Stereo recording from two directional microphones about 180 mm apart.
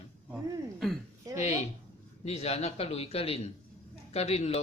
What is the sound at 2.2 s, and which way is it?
A man's voice, 35° left (ahead or behind).